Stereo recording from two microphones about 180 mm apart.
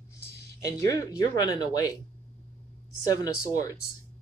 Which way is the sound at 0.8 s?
20° left (ahead or behind).